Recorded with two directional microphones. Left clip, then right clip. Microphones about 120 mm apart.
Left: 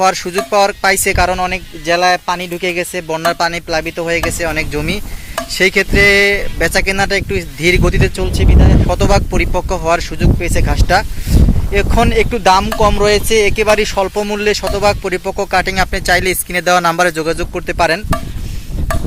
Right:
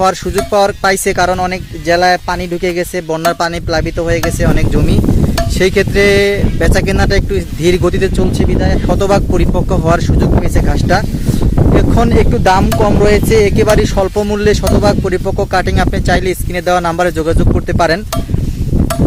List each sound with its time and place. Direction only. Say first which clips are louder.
0.0 s speech: right 1 dB; 40° right (ahead or behind)
12.5 s speech: right 1 dB; 60° right (ahead or behind); by 17.2 s 15° right (ahead or behind)
17.2 s speech: right 3 dB; 35° right (ahead or behind)